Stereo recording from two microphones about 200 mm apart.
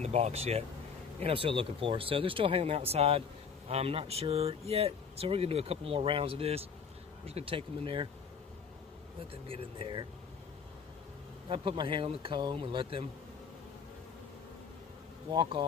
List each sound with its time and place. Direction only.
0.0 s speech: 35° right (ahead or behind)
9.3 s speech: 25° right (ahead or behind)
11.4 s speech: 25° right (ahead or behind)